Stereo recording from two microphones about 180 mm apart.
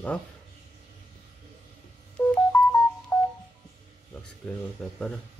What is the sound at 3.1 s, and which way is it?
Telephone dialing, 5° left (ahead or behind).